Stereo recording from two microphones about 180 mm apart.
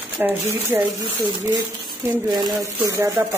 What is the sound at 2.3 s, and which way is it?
Speech, 15° right (ahead or behind).